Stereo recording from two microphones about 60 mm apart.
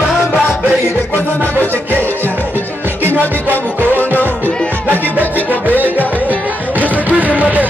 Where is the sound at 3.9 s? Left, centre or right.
Left.